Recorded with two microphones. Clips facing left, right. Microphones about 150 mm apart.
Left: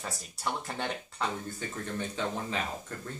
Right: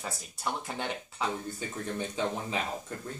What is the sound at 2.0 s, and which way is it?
Speech, 15° right (ahead or behind).